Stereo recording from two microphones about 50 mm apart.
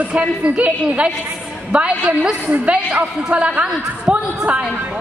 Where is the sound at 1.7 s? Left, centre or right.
Right.